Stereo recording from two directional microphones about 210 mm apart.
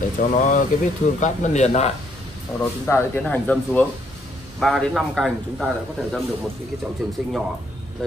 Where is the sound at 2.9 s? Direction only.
10° left (ahead or behind).